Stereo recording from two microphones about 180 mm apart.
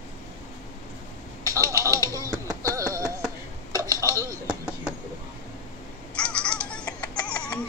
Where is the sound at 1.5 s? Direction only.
15° right (ahead or behind).